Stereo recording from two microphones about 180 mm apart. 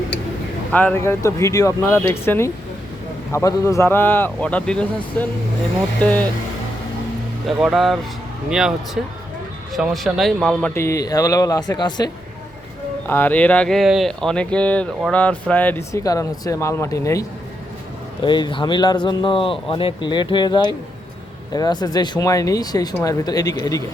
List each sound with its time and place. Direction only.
0.7 s speech: 10° left (ahead or behind)
7.4 s speech: centre (ahead or behind)
10.8 s speech: 15° left (ahead or behind)
13.1 s speech: 10° left (ahead or behind)